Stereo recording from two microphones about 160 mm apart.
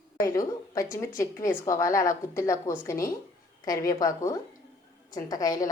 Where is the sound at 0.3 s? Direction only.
20° left (ahead or behind).